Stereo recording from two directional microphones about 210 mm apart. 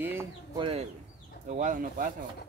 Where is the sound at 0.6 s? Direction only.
25° right (ahead or behind).